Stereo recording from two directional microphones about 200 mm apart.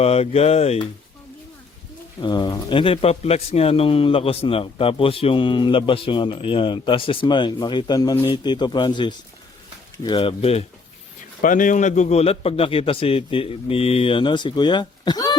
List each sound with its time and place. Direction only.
0.0 s speech: 30° left (ahead or behind)
2.2 s speech: 20° left (ahead or behind)
11.3 s speech: 40° left (ahead or behind); by 15.4 s 20° left (ahead or behind)